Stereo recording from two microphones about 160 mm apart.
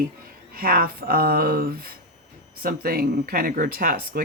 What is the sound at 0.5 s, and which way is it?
Speech, 65° right (ahead or behind).